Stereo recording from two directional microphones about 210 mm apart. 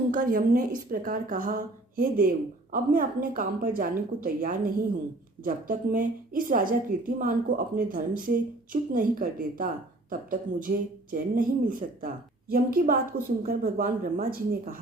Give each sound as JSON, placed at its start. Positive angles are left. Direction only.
{"t": 0.1, "sound": "a woman's voice", "side_deg": -40}